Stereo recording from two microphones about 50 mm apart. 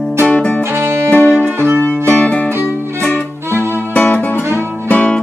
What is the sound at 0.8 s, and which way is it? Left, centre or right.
Music, right.